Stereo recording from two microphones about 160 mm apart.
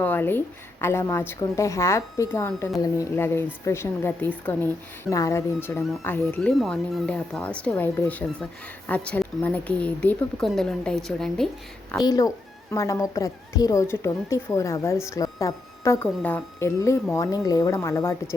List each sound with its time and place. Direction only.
0.0 s a woman's voice: 10° left (ahead or behind)
11.9 s a woman's voice: 25° left (ahead or behind)